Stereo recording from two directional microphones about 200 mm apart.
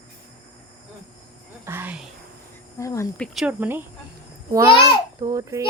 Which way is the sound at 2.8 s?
15° left (ahead or behind).